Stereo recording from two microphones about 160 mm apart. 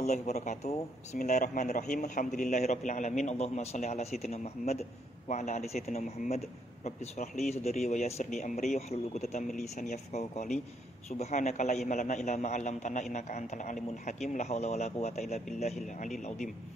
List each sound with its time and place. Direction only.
0.0 s speech: 45° left (ahead or behind)